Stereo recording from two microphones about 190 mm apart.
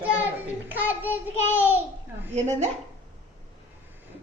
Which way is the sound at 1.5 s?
10° right (ahead or behind).